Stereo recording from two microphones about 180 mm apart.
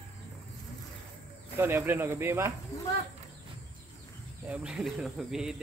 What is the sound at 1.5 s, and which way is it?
Speech, 10° right (ahead or behind).